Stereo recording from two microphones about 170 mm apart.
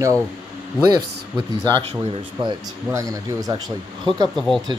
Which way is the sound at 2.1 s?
30° right (ahead or behind).